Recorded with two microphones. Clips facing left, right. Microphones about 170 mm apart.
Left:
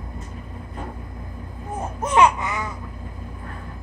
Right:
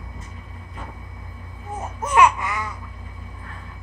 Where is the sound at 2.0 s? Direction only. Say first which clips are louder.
Even; 25° left (ahead or behind).